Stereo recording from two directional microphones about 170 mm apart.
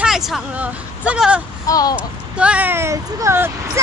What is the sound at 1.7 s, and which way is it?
Speech, 20° left (ahead or behind).